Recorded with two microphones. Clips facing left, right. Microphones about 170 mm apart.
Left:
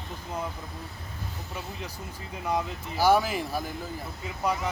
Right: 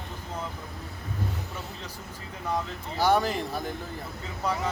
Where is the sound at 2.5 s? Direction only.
5° left (ahead or behind).